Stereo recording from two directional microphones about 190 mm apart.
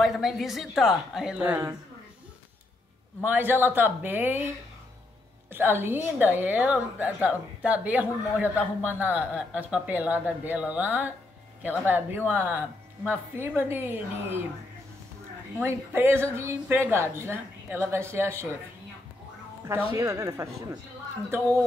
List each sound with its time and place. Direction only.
0.0 s a woman's voice: centre (ahead or behind)
3.3 s a woman's voice: 10° right (ahead or behind)
5.5 s a woman's voice: 10° right (ahead or behind)
15.6 s a woman's voice: 15° right (ahead or behind)
20.0 s a woman's voice: 15° right (ahead or behind)